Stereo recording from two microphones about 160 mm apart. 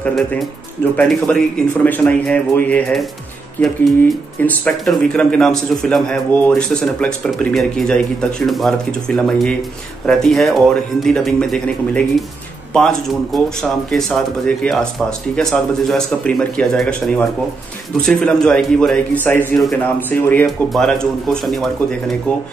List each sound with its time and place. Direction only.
0.0 s speech: 5° left (ahead or behind)